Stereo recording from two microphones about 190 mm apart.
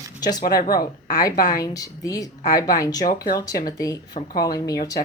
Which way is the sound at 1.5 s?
20° left (ahead or behind).